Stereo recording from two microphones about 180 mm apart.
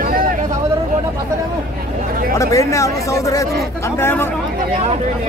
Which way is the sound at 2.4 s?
15° left (ahead or behind).